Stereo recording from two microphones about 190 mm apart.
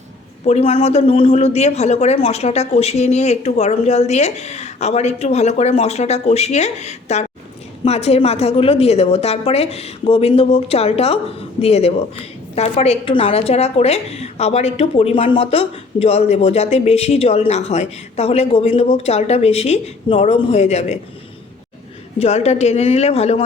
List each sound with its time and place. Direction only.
0.4 s a woman's voice: 35° left (ahead or behind)
22.2 s a woman's voice: 35° left (ahead or behind)